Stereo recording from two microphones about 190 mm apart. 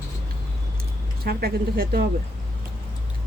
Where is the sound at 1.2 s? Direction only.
55° right (ahead or behind).